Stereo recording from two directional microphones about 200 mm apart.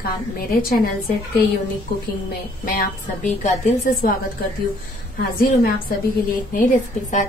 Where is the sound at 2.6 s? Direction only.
45° left (ahead or behind).